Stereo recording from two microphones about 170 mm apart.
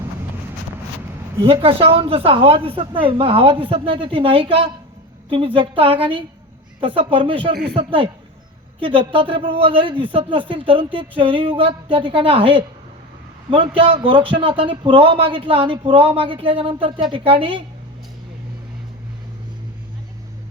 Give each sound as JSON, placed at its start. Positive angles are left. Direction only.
{"t": 1.6, "sound": "a man's voice", "side_deg": -35}